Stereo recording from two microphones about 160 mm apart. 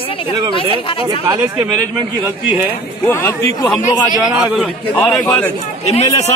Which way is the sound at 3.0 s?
15° left (ahead or behind).